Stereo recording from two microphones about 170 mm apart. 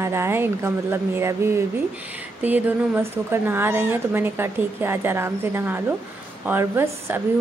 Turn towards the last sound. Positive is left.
turn(degrees=-15)  # may be behind; listen again after turning